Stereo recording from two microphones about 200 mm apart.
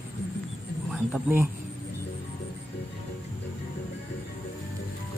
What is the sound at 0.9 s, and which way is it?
Speech, 10° right (ahead or behind).